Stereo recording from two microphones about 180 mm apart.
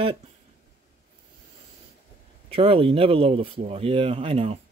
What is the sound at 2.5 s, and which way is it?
Speech, 30° right (ahead or behind).